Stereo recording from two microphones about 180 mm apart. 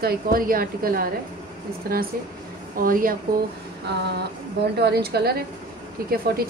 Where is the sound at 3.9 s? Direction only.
65° right (ahead or behind).